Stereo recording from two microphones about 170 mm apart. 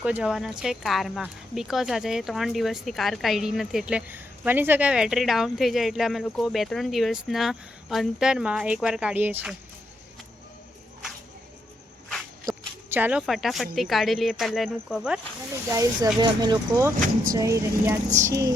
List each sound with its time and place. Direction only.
0.0 s speech: 5° right (ahead or behind)
12.5 s speech: 10° right (ahead or behind)
15.7 s speech: 20° right (ahead or behind)